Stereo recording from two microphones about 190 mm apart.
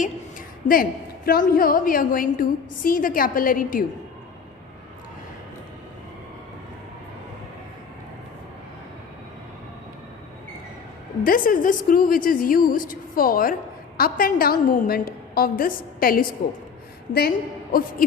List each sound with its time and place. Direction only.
0.0 s a woman's voice: 45° left (ahead or behind)
11.2 s a woman's voice: 45° left (ahead or behind)